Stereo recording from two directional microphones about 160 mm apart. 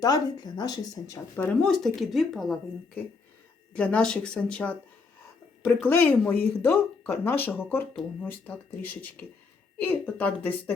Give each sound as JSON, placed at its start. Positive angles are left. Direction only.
{"t": 0.0, "sound": "speech", "side_deg": 25}
{"t": 1.4, "sound": "speech", "side_deg": 5}